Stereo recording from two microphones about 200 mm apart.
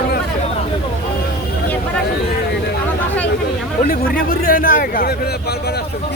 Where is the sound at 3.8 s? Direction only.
45° left (ahead or behind).